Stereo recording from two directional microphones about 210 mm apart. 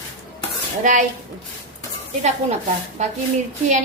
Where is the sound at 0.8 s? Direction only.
40° right (ahead or behind).